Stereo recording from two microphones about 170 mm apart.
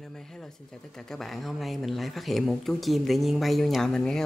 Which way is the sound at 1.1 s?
Centre (ahead or behind).